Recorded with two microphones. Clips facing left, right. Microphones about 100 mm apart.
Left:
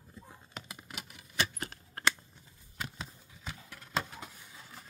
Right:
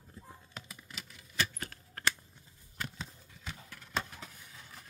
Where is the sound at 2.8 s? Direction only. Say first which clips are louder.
Even; 10° left (ahead or behind).